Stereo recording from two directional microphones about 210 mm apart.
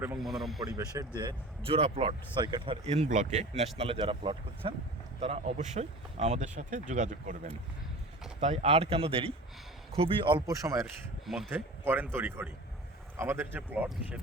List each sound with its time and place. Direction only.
0.0 s speech: 5° right (ahead or behind)
0.6 s speech: 20° right (ahead or behind)
11.3 s speech: centre (ahead or behind)
12.1 s speech: 10° right (ahead or behind)